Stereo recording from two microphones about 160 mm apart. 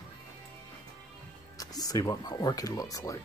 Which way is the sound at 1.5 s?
25° left (ahead or behind).